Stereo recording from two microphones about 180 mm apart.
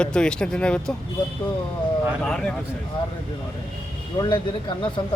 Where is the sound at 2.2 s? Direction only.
5° left (ahead or behind).